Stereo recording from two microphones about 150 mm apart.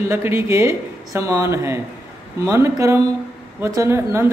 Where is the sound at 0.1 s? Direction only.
15° right (ahead or behind).